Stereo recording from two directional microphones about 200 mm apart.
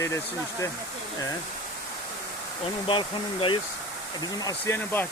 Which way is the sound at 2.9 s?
25° left (ahead or behind).